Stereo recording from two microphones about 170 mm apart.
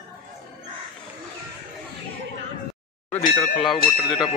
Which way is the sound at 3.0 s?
15° left (ahead or behind).